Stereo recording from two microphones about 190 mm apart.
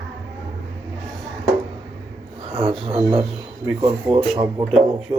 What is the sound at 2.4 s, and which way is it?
Music, 30° right (ahead or behind).